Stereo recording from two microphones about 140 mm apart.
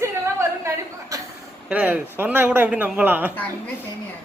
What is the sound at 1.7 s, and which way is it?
A man's voice, 10° right (ahead or behind).